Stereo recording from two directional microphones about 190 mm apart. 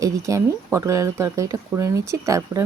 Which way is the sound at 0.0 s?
15° right (ahead or behind).